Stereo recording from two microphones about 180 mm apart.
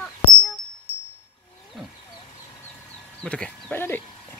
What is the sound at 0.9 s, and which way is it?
Wind chime, 60° left (ahead or behind).